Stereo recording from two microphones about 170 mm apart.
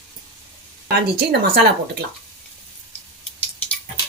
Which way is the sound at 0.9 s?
70° right (ahead or behind).